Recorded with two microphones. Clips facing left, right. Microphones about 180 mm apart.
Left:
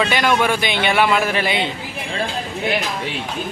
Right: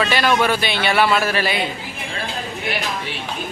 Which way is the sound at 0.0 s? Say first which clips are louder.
Even; 15° left (ahead or behind).